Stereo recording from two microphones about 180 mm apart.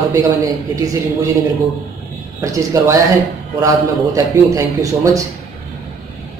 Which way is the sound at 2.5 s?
15° right (ahead or behind).